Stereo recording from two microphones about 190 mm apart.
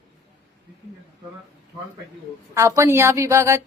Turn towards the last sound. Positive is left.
turn(degrees=-15)  # may be behind; listen again after turning